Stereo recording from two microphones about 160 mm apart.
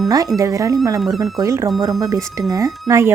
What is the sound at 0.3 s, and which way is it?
Speech, 20° right (ahead or behind).